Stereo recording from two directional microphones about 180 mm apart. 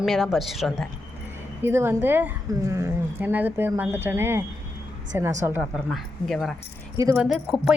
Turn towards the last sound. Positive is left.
turn(degrees=-5)  # may be behind; listen again after turning